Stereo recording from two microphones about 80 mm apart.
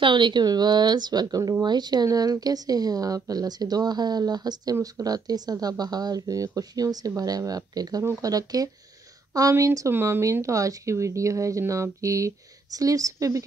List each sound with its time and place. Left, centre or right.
0.0 s speech: right
9.8 s speech: right